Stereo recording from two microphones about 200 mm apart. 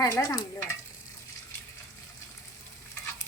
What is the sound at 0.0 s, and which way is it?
Stir, 15° left (ahead or behind).